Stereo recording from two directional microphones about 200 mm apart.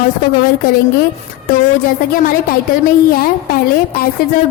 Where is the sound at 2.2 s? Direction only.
45° left (ahead or behind).